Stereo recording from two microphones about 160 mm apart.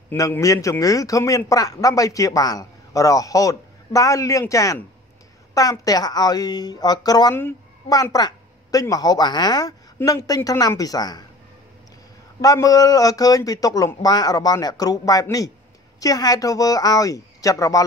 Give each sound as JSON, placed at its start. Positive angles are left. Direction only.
{"t": 0.1, "sound": "speech", "side_deg": 15}
{"t": 12.4, "sound": "speech", "side_deg": 20}